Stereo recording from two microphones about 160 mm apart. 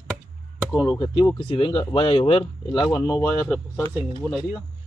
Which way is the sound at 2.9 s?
20° left (ahead or behind).